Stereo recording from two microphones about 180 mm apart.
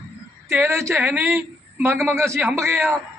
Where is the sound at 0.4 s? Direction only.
15° right (ahead or behind).